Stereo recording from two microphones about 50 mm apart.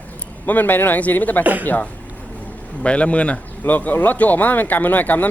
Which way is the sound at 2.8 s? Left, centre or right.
Left.